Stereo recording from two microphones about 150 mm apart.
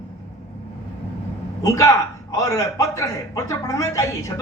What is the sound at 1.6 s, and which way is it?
A man's voice, 20° left (ahead or behind).